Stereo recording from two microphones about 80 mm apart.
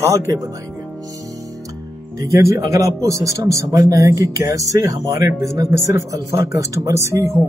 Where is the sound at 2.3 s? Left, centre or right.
Right.